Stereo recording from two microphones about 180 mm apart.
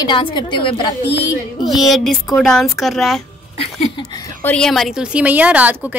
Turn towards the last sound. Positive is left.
turn(degrees=-10)  # may be behind; listen again after turning